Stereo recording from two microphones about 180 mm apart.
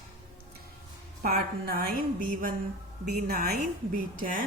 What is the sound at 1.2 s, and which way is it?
Speech, 55° right (ahead or behind).